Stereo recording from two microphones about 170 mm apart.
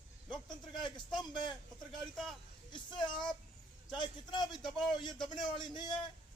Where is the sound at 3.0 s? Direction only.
5° left (ahead or behind).